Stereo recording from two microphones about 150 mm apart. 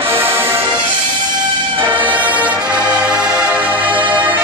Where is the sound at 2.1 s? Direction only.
10° right (ahead or behind).